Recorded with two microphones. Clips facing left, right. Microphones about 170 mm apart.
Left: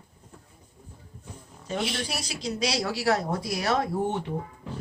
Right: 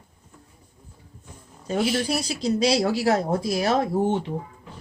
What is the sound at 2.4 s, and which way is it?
Speech, 30° right (ahead or behind).